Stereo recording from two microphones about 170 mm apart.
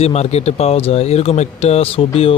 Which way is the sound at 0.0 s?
40° left (ahead or behind).